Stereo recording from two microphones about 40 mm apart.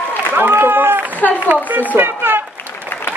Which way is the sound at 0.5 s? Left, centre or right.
Right.